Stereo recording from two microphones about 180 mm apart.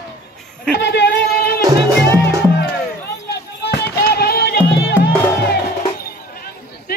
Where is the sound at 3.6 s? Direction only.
60° left (ahead or behind).